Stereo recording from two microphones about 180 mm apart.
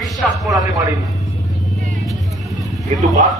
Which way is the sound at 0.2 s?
Centre (ahead or behind).